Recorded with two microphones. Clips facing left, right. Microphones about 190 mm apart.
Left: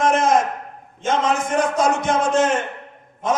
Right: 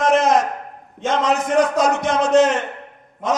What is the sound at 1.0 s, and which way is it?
A man's voice, 50° left (ahead or behind).